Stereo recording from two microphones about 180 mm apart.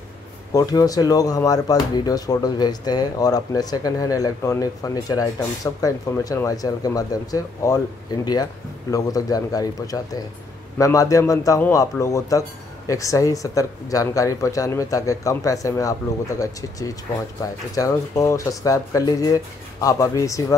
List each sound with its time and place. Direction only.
0.5 s speech: 20° left (ahead or behind)
8.9 s speech: 20° left (ahead or behind)